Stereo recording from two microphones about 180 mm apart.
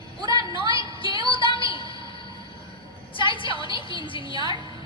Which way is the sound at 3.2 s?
30° left (ahead or behind).